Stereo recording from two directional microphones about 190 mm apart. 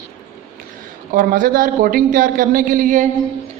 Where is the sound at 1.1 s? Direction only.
45° right (ahead or behind).